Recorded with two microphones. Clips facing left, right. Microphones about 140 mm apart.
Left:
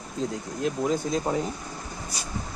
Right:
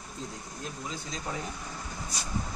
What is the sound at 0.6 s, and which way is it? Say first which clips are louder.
Speech: left 14 dB; 75° left (ahead or behind).